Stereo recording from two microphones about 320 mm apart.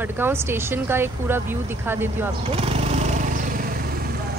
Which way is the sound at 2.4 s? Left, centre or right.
Centre.